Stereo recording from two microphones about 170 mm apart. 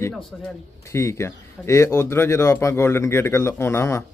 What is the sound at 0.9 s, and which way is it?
Speech, 15° left (ahead or behind).